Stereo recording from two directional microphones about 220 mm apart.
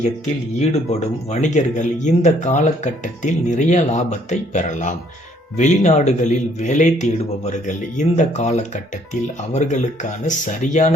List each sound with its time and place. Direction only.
0.9 s speech: 30° left (ahead or behind)